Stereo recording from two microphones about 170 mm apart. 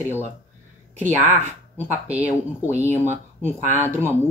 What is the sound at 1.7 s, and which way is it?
Speech, 10° right (ahead or behind).